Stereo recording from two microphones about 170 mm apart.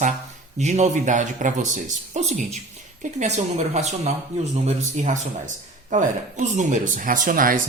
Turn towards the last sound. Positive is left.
turn(degrees=-55)  # may be behind; listen again after turning